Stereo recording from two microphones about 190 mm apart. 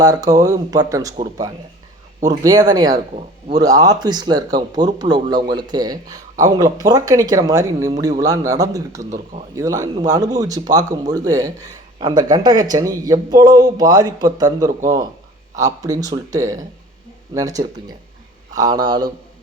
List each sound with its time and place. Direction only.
0.0 s speech: 20° right (ahead or behind)
9.0 s speech: 40° right (ahead or behind)
9.6 s speech: 20° right (ahead or behind)
14.6 s a man's voice: 45° right (ahead or behind)
15.5 s speech: 20° right (ahead or behind)